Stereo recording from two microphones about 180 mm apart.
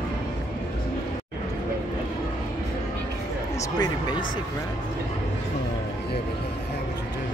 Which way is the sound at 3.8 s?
25° left (ahead or behind).